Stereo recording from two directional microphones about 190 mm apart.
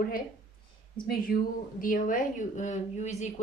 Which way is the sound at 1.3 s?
45° left (ahead or behind).